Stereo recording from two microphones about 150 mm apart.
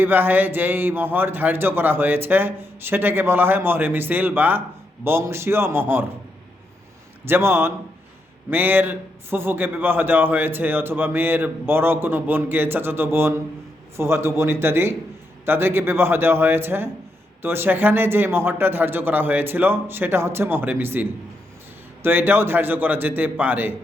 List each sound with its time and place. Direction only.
0.0 s a man's voice: 15° right (ahead or behind)
7.3 s a man's voice: 15° right (ahead or behind)